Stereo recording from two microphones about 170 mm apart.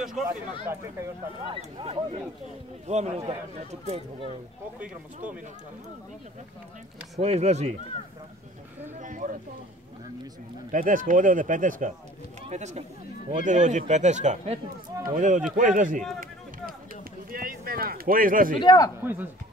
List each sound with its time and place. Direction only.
0.0 s speech: 5° right (ahead or behind)
1.5 s speech: 30° right (ahead or behind)
4.7 s speech: 10° right (ahead or behind)
7.2 s speech: 40° right (ahead or behind)
9.0 s speech: 50° right (ahead or behind)
10.7 s speech: 50° right (ahead or behind)
17.3 s speech: 60° right (ahead or behind)
18.6 s speech: 25° left (ahead or behind)